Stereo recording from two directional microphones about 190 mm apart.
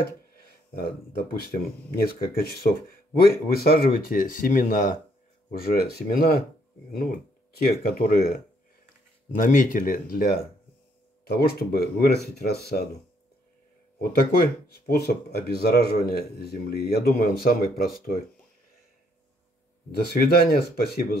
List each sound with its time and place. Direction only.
0.7 s speech: 55° left (ahead or behind)
13.9 s speech: 55° left (ahead or behind)
20.1 s speech: 55° left (ahead or behind)